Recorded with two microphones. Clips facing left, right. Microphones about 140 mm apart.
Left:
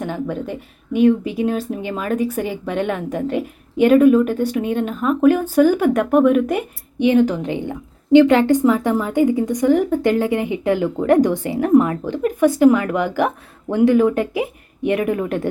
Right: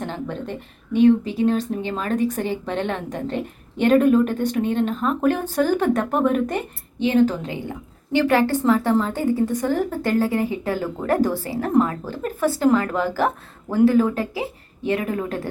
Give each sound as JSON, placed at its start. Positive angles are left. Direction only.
{"t": 0.0, "sound": "a sound", "side_deg": 10}
{"t": 0.9, "sound": "speech", "side_deg": 15}
{"t": 14.8, "sound": "speech", "side_deg": 20}